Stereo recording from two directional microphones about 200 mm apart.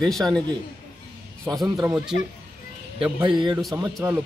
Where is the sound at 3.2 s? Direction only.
20° right (ahead or behind).